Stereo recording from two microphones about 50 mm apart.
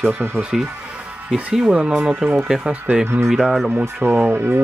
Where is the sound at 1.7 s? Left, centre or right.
Right.